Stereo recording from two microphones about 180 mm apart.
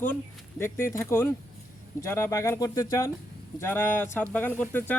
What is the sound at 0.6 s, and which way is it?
Speech, 15° left (ahead or behind).